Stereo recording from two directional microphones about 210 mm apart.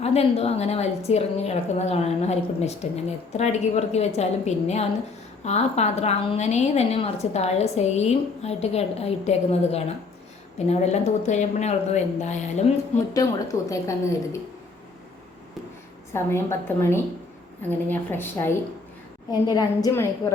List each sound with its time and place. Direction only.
0.0 s a woman's voice: 30° left (ahead or behind)
13.1 s speech: 15° left (ahead or behind)
16.1 s speech: 10° left (ahead or behind)